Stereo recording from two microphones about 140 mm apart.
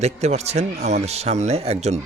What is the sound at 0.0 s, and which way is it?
Speech, 50° right (ahead or behind).